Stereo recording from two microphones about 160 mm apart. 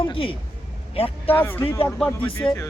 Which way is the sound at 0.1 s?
35° left (ahead or behind).